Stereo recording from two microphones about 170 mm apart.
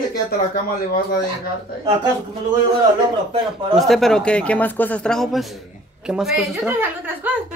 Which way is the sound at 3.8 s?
Centre (ahead or behind).